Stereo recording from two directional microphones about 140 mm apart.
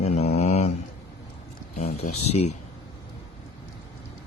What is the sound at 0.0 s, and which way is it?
Mantra, 50° left (ahead or behind).